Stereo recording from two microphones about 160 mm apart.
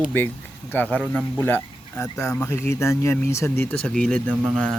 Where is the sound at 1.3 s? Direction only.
15° left (ahead or behind).